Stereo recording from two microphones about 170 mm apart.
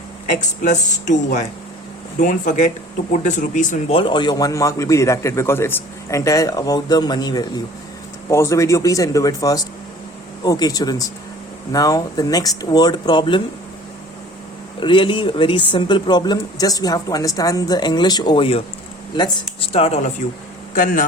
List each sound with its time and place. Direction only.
0.3 s speech: 45° left (ahead or behind)
3.9 s speech: 30° left (ahead or behind)
14.8 s speech: 30° left (ahead or behind)
20.7 s speech: 55° left (ahead or behind)